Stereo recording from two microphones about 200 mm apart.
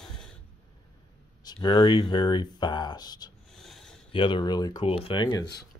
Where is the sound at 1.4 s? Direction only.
20° left (ahead or behind).